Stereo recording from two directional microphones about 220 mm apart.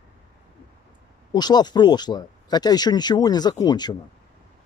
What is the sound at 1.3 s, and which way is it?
Speech, 20° left (ahead or behind).